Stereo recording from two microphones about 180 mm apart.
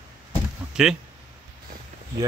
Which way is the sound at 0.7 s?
5° right (ahead or behind).